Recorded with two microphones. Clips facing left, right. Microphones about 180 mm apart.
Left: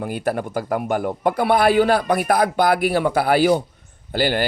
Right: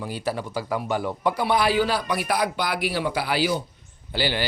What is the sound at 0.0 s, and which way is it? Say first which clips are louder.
Speech: left 5 dB; 55° left (ahead or behind).